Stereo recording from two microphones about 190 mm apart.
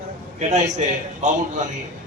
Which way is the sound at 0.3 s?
40° right (ahead or behind).